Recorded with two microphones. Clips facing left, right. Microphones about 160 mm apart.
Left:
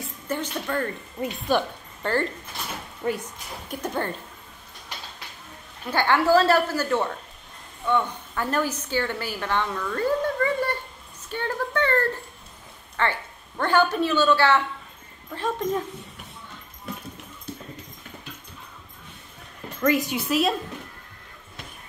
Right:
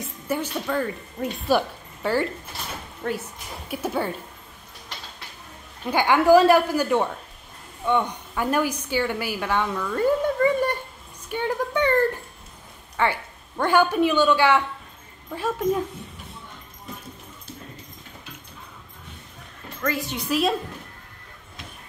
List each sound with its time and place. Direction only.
0.3 s a woman's voice: 10° right (ahead or behind)
3.0 s a woman's voice: 10° left (ahead or behind)
3.6 s a woman's voice: 5° right (ahead or behind)
5.9 s a woman's voice: 15° right (ahead or behind)
11.2 s a sound: 15° right (ahead or behind)
12.9 s a woman's voice: 10° right (ahead or behind)
19.8 s a woman's voice: 15° left (ahead or behind)
20.2 s a woman's voice: centre (ahead or behind)